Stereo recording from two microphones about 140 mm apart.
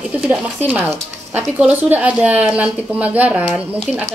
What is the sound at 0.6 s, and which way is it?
Speech, 15° right (ahead or behind).